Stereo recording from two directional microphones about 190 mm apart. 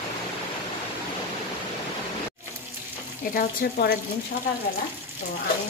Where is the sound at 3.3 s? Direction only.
45° left (ahead or behind).